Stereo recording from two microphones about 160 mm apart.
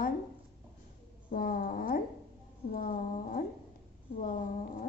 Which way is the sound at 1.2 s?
65° left (ahead or behind).